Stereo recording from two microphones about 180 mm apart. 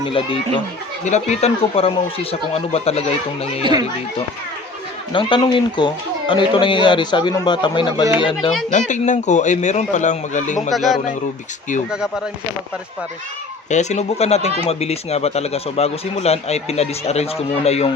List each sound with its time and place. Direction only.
0.0 s a man's voice: 30° left (ahead or behind)
3.6 s speech: 25° right (ahead or behind)
5.1 s speech: 25° left (ahead or behind)
8.9 s a man's voice: 40° left (ahead or behind)
10.7 s speech: centre (ahead or behind)
13.7 s a man's voice: 40° left (ahead or behind)